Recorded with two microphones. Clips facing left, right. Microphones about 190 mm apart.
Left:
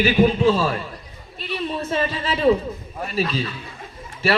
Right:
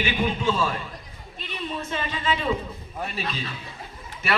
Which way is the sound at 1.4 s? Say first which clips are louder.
Left 6 dB; 35° left (ahead or behind).